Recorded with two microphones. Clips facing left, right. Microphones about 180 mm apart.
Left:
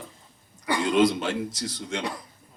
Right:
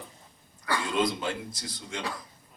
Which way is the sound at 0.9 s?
80° left.